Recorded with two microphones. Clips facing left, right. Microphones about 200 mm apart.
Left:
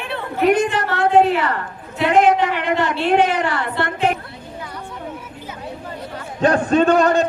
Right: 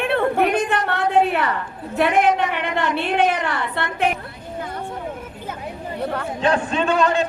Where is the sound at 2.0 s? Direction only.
60° right (ahead or behind).